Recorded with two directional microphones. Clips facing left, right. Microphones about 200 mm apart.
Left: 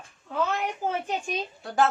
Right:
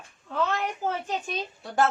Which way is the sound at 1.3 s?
Centre (ahead or behind).